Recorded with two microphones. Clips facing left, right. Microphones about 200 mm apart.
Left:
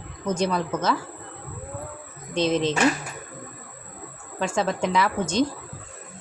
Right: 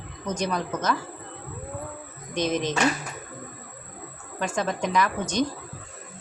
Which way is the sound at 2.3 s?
25° left (ahead or behind).